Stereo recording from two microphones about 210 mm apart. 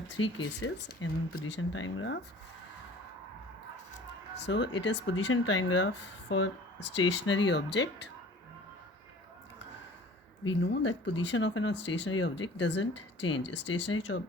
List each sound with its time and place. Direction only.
0.2 s speech: 85° left
0.5 s speech: 65° left (ahead or behind)
4.4 s speech: 55° left (ahead or behind)
10.4 s speech: 60° left (ahead or behind)